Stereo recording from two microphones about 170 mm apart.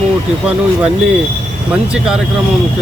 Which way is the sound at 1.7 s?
5° right (ahead or behind).